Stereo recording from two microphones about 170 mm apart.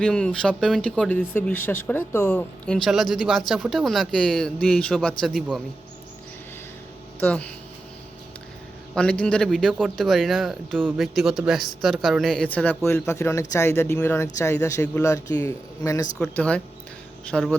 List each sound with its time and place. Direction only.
0.0 s speech: 5° left (ahead or behind)
7.2 s speech: 10° left (ahead or behind)
9.0 s speech: 5° left (ahead or behind)
16.1 s speech: 5° left (ahead or behind)